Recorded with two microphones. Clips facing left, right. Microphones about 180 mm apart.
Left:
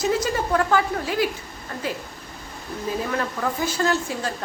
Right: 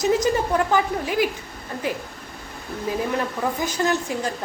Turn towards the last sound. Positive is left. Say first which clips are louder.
# right 1 dB
turn(degrees=-15)  # may be behind; listen again after turning